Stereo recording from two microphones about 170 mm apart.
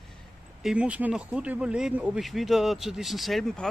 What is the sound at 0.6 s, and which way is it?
Speech, 5° right (ahead or behind).